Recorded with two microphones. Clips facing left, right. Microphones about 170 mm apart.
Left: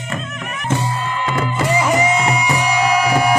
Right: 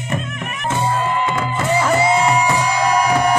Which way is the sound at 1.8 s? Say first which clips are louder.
Right 1 dB; 15° left (ahead or behind).